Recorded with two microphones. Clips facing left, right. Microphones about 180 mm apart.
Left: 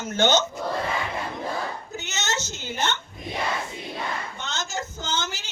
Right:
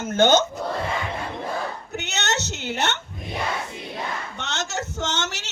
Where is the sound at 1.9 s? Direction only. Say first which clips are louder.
Right 5 dB; 65° right (ahead or behind).